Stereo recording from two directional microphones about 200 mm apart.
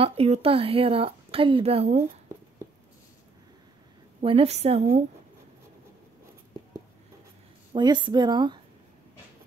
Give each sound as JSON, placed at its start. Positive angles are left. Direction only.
{"t": 0.0, "sound": "speech", "side_deg": -30}
{"t": 4.2, "sound": "speech", "side_deg": -30}
{"t": 7.7, "sound": "speech", "side_deg": -20}